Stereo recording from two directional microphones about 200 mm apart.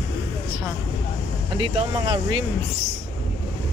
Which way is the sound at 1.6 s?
25° right (ahead or behind).